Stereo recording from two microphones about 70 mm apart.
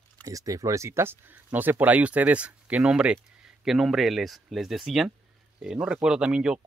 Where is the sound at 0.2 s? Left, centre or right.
Right.